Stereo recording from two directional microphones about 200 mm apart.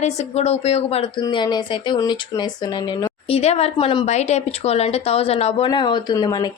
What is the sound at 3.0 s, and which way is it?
A woman's voice, 30° left (ahead or behind).